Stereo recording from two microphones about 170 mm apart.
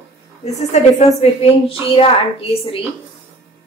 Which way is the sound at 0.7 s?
40° left (ahead or behind).